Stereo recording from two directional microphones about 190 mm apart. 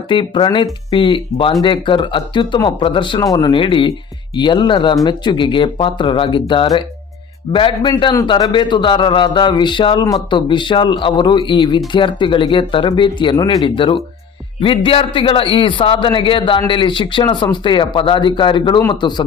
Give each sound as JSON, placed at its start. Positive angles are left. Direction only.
{"t": 0.1, "sound": "a man's voice", "side_deg": 25}